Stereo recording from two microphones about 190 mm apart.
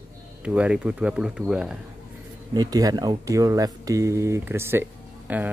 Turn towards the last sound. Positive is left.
turn(degrees=-10)  # may be behind; listen again after turning